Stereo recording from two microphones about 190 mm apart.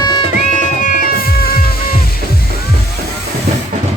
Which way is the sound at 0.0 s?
20° left (ahead or behind).